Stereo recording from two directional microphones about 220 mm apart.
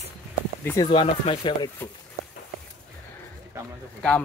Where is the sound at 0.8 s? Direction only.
25° left (ahead or behind).